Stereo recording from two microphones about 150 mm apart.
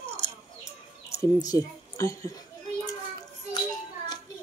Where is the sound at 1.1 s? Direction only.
25° left (ahead or behind).